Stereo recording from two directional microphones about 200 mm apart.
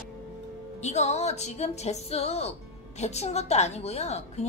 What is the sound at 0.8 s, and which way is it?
A woman's voice, 35° left (ahead or behind).